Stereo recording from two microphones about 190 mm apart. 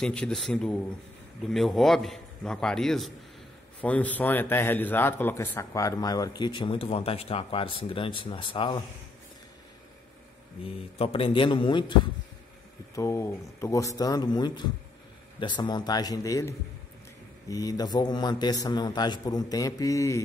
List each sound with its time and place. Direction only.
0.0 s a man's voice: 5° left (ahead or behind); by 8.8 s 25° left (ahead or behind)
10.6 s a man's voice: 30° left (ahead or behind)
12.9 s a man's voice: 15° left (ahead or behind)